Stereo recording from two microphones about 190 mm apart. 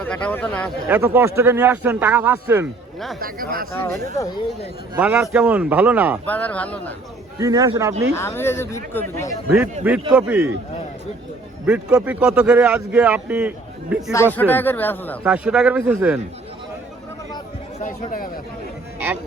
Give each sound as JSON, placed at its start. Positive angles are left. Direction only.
{"t": 0.0, "sound": "speech", "side_deg": 5}
{"t": 0.9, "sound": "a man's voice", "side_deg": -10}
{"t": 3.2, "sound": "speech", "side_deg": -50}
{"t": 3.7, "sound": "speech", "side_deg": 10}
{"t": 4.9, "sound": "a man's voice", "side_deg": -5}
{"t": 6.2, "sound": "speech", "side_deg": 10}
{"t": 7.3, "sound": "a man's voice", "side_deg": -20}
{"t": 8.1, "sound": "speech", "side_deg": 15}
{"t": 9.8, "sound": "a man's voice", "side_deg": -10}
{"t": 11.6, "sound": "a man's voice", "side_deg": -5}
{"t": 14.3, "sound": "speech", "side_deg": 10}
{"t": 15.2, "sound": "a man's voice", "side_deg": -5}
{"t": 17.8, "sound": "speech", "side_deg": 45}